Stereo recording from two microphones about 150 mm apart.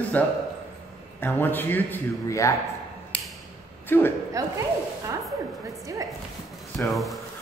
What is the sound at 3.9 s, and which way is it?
Speech, 15° left (ahead or behind).